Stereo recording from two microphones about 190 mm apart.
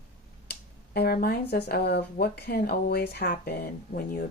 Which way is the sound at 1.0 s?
55° left (ahead or behind).